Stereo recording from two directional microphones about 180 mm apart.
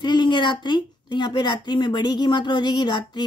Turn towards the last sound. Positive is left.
turn(degrees=25)  # may be behind; listen again after turning